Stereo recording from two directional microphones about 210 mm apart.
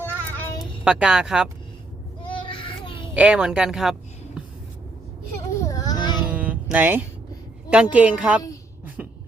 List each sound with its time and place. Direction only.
0.0 s child singing: 10° left (ahead or behind)
0.9 s speech: 5° right (ahead or behind)
2.3 s child singing: 25° left (ahead or behind)
3.2 s speech: 5° right (ahead or behind)
5.5 s a sound: 15° left (ahead or behind)
6.2 s music: 5° right (ahead or behind)
7.7 s speech: 5° right (ahead or behind)
9.0 s beatboxing: 5° right (ahead or behind)